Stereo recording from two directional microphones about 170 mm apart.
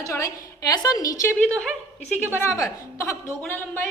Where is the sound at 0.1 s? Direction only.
20° left (ahead or behind).